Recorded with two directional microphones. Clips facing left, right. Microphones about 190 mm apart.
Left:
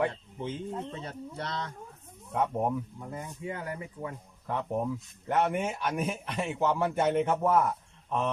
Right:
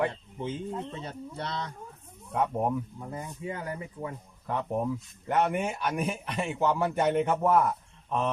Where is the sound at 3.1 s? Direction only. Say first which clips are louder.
Right 1 dB; 25° right (ahead or behind).